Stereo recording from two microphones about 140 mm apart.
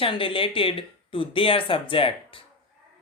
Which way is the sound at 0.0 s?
40° left (ahead or behind).